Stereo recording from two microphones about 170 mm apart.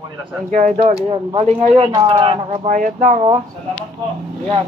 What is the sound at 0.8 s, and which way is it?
Speech, 30° right (ahead or behind).